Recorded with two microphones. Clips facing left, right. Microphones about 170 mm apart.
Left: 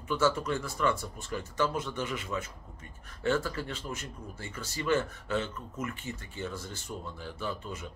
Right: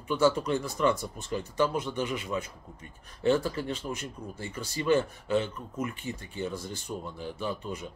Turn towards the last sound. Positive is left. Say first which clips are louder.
# right 3 dB
turn(degrees=-15)  # may be behind; listen again after turning